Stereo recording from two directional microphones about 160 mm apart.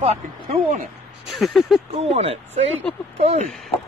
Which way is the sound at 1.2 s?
Centre (ahead or behind).